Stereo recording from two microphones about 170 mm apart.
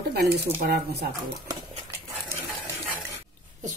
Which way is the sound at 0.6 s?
65° right (ahead or behind).